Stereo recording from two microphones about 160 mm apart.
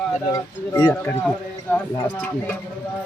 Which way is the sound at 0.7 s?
20° left (ahead or behind).